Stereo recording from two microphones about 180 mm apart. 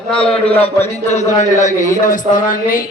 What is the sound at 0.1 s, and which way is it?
Speech, 5° left (ahead or behind).